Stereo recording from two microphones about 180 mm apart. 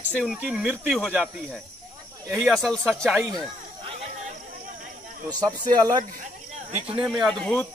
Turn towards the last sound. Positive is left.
turn(degrees=5)  # may be behind; listen again after turning